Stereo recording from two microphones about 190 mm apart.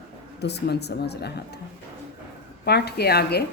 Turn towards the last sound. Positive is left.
turn(degrees=60)  # may be behind; listen again after turning